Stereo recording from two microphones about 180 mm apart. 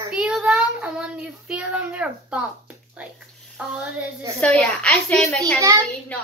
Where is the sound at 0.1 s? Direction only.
5° right (ahead or behind).